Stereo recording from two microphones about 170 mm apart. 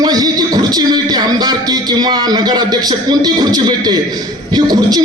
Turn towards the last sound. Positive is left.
turn(degrees=-25)  # may be behind; listen again after turning